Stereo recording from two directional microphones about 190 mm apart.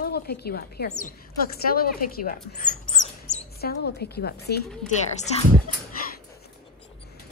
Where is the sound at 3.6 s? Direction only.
55° left (ahead or behind).